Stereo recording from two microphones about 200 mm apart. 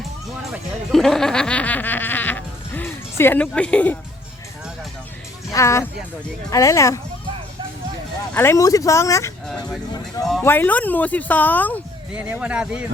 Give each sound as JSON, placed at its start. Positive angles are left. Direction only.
{"t": 0.5, "sound": "speech", "side_deg": 0}
{"t": 5.5, "sound": "speech", "side_deg": 15}
{"t": 8.3, "sound": "speech", "side_deg": 10}
{"t": 10.4, "sound": "speech", "side_deg": 10}
{"t": 12.1, "sound": "speech", "side_deg": -5}